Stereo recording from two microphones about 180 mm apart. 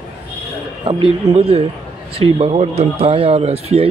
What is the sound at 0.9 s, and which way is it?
Speech, 30° right (ahead or behind).